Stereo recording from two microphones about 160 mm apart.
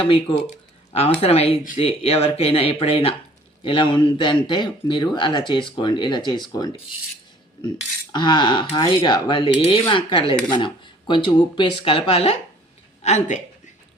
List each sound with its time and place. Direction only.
0.0 s speech: 35° left (ahead or behind)
8.1 s a woman's voice: 30° left (ahead or behind); by 13.4 s 45° left (ahead or behind)